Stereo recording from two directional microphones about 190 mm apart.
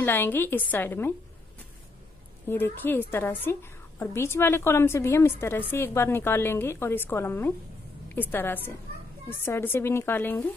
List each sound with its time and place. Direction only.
0.0 s a woman's voice: 10° left (ahead or behind)
2.4 s a woman's voice: 10° left (ahead or behind)